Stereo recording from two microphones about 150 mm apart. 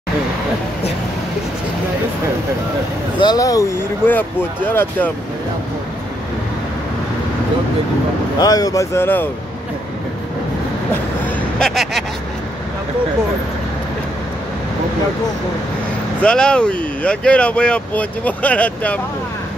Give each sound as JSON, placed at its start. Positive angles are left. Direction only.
{"t": 3.2, "sound": "speech", "side_deg": 25}
{"t": 4.1, "sound": "speech", "side_deg": 10}
{"t": 8.4, "sound": "speech", "side_deg": 25}
{"t": 11.2, "sound": "speech", "side_deg": 5}
{"t": 16.2, "sound": "speech", "side_deg": 5}